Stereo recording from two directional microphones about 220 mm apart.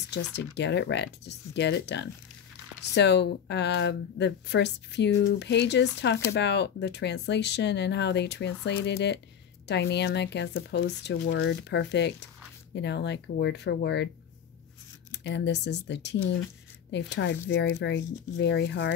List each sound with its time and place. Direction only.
0.1 s speech: 50° left (ahead or behind)
15.0 s speech: 50° left (ahead or behind)